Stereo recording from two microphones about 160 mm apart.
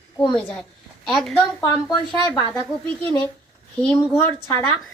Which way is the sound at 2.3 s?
10° left (ahead or behind).